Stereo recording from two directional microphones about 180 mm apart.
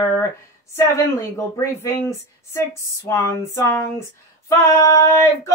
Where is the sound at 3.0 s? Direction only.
15° left (ahead or behind).